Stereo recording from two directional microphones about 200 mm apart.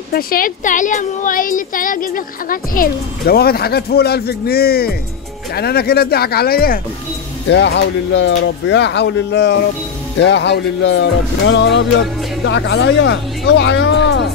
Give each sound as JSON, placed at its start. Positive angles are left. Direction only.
{"t": 0.1, "sound": "a woman's voice", "side_deg": 45}
{"t": 7.4, "sound": "speech", "side_deg": 60}